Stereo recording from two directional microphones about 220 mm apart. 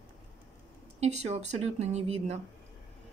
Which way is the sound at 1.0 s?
30° right (ahead or behind).